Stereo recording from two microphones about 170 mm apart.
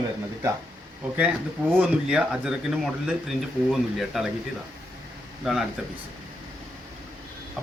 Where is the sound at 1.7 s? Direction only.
5° right (ahead or behind).